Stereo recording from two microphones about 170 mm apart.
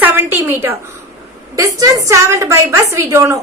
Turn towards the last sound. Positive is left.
turn(degrees=-15)  # may be behind; listen again after turning